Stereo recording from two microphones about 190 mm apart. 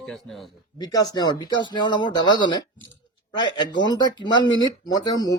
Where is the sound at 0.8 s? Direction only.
20° left (ahead or behind).